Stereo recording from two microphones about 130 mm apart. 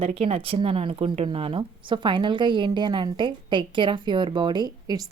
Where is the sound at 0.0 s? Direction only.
45° right (ahead or behind).